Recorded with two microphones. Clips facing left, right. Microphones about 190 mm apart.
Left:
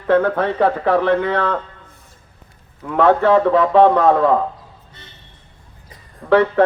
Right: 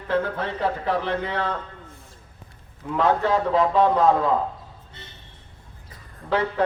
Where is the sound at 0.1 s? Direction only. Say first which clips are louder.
Left 9 dB; 60° left (ahead or behind).